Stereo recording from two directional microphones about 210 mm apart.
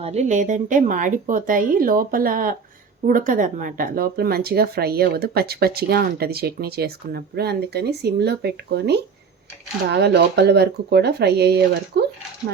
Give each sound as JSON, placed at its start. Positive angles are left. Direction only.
{"t": 0.0, "sound": "a woman's voice", "side_deg": -30}